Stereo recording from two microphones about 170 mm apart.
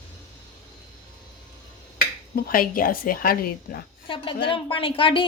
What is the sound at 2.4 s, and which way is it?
A woman's voice, 55° left (ahead or behind).